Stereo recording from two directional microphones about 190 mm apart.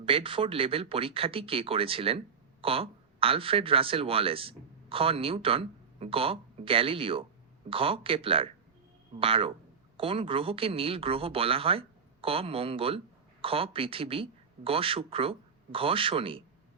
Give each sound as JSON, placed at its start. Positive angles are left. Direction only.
{"t": 0.0, "sound": "speech", "side_deg": -30}